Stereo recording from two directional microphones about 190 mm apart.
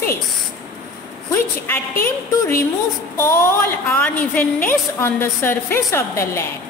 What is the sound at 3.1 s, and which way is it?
A woman's voice, 10° left (ahead or behind).